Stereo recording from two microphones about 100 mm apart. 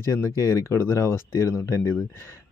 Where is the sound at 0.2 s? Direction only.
30° left (ahead or behind).